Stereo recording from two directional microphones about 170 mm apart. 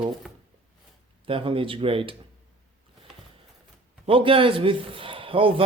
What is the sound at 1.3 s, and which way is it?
Speech, 30° right (ahead or behind).